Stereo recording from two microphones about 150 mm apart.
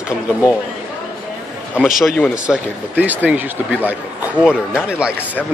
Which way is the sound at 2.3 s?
5° right (ahead or behind).